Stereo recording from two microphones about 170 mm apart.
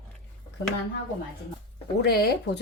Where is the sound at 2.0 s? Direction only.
70° left (ahead or behind).